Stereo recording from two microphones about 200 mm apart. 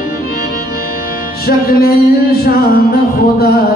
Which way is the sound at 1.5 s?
50° left (ahead or behind).